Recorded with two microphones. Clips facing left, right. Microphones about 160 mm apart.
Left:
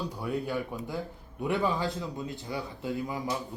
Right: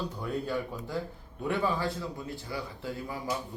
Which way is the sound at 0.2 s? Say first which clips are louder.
Left 1 dB; 15° left (ahead or behind).